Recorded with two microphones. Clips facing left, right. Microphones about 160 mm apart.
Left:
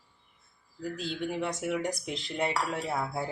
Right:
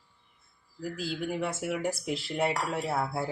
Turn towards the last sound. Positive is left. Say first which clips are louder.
# right 2 dB
turn(degrees=-5)  # may be behind; listen again after turning